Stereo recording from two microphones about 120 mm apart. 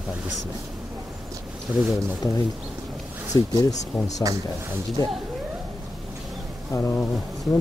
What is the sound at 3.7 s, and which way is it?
Speech, 75° left (ahead or behind).